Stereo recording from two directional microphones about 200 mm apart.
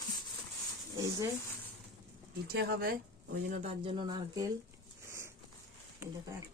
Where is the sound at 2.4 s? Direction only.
55° right (ahead or behind); by 4.4 s 20° right (ahead or behind).